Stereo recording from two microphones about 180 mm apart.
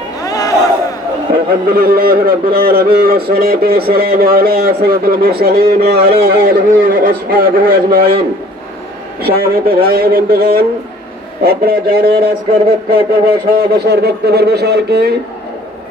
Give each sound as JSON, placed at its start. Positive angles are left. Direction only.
{"t": 0.2, "sound": "a sound", "side_deg": 20}
{"t": 1.3, "sound": "speech", "side_deg": -55}
{"t": 9.2, "sound": "speech", "side_deg": -60}